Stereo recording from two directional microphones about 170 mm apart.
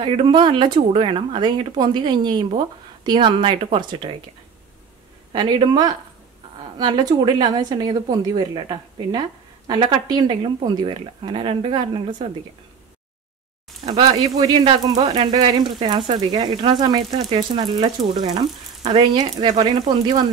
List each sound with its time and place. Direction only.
0.0 s speech: 30° right (ahead or behind)
5.3 s speech: 25° right (ahead or behind)
13.8 s speech: 25° right (ahead or behind)